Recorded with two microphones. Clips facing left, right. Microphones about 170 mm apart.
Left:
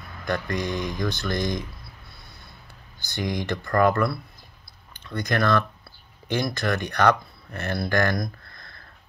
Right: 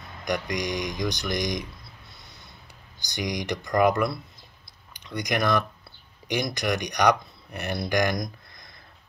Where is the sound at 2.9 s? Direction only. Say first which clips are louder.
Left 2 dB; 15° right (ahead or behind).